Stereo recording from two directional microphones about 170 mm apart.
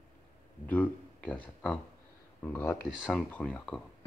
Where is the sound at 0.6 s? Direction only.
10° left (ahead or behind).